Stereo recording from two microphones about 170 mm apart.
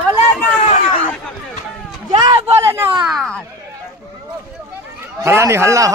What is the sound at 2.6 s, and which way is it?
Speech, 15° right (ahead or behind).